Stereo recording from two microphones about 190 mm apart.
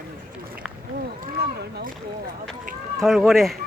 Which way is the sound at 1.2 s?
45° right (ahead or behind).